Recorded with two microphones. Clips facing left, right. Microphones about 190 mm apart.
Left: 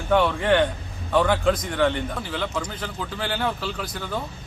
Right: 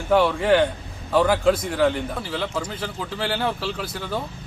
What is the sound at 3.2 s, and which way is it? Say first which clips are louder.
Speech: right 2 dB; 30° right (ahead or behind).